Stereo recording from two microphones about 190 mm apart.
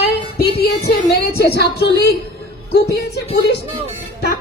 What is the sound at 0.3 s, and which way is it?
Music, 55° left (ahead or behind).